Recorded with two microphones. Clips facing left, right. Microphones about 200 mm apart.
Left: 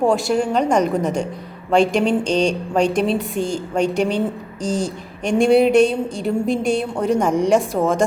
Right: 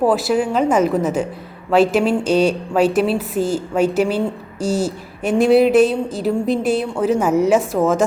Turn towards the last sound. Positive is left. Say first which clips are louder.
# right 2 dB
turn(degrees=0)  # may be behind; listen again after turning